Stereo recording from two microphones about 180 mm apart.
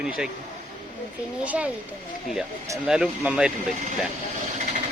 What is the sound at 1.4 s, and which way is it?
Speech, 10° right (ahead or behind).